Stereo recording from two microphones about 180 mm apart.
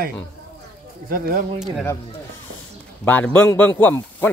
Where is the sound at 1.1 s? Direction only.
55° right (ahead or behind).